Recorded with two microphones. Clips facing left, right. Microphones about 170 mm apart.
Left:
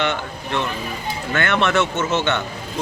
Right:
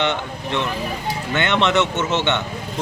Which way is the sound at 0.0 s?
20° right (ahead or behind).